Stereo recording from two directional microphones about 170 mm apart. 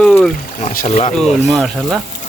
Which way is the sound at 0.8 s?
40° left (ahead or behind).